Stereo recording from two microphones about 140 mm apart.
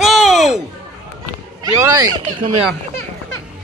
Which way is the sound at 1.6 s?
25° right (ahead or behind).